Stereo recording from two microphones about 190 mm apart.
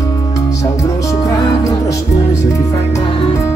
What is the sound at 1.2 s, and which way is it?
Music, 15° left (ahead or behind).